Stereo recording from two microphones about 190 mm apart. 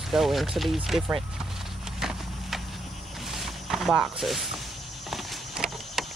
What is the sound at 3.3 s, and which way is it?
Walk, centre (ahead or behind).